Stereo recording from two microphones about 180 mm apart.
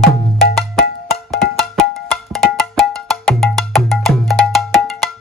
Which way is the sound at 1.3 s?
Centre (ahead or behind).